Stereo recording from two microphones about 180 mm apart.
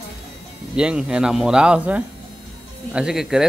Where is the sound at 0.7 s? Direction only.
5° right (ahead or behind).